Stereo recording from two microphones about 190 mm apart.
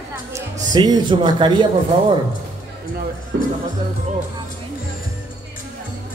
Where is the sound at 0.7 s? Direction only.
20° right (ahead or behind).